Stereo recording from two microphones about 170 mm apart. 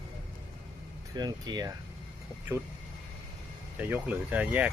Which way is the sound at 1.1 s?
25° right (ahead or behind).